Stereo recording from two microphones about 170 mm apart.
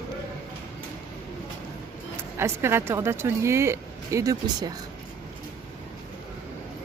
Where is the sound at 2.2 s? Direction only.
15° right (ahead or behind).